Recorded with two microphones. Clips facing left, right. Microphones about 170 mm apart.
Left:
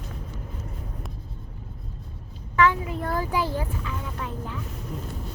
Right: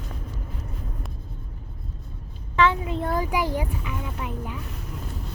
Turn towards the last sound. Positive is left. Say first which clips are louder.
# right 1 dB
turn(degrees=-15)  # may be behind; listen again after turning